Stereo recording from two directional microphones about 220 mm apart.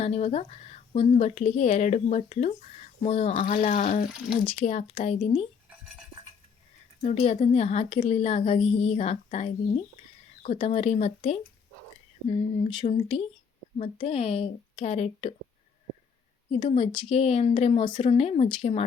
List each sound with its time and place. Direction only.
0.0 s speech: 30° left (ahead or behind)
7.0 s a woman's voice: 30° left (ahead or behind)
12.6 s a woman's voice: 20° left (ahead or behind)
16.6 s a woman's voice: 25° left (ahead or behind)